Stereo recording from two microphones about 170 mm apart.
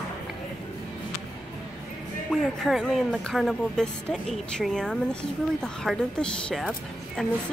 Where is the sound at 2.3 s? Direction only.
Centre (ahead or behind).